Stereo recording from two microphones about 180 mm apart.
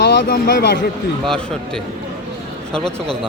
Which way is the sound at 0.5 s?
60° left (ahead or behind).